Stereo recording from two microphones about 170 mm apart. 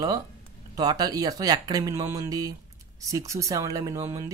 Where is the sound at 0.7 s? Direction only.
25° right (ahead or behind).